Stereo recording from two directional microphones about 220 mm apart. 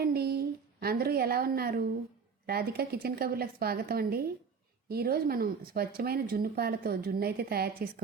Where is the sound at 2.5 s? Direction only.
45° right (ahead or behind).